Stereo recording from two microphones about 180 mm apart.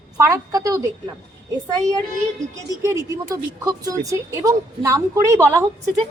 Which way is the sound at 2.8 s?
15° right (ahead or behind).